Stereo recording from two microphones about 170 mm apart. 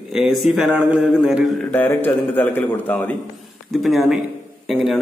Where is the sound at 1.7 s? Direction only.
10° left (ahead or behind).